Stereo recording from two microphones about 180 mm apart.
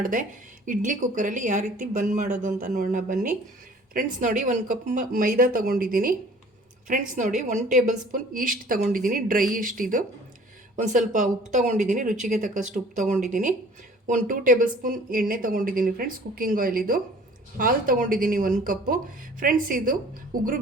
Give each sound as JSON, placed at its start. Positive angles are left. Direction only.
{"t": 0.0, "sound": "a woman's voice", "side_deg": -45}